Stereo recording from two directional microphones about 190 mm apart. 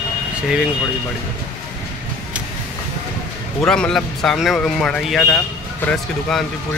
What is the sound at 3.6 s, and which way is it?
A man's voice, 5° left (ahead or behind).